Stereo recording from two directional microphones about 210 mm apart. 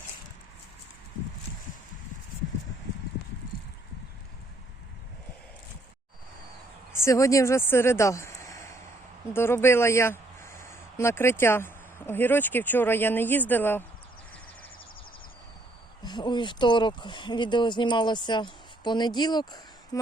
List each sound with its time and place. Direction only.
6.9 s speech: 15° left (ahead or behind)
16.0 s speech: 20° left (ahead or behind)